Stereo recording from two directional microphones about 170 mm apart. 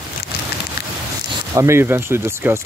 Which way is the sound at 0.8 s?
70° left (ahead or behind).